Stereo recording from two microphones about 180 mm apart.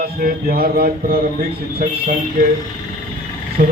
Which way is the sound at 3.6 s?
55° right (ahead or behind).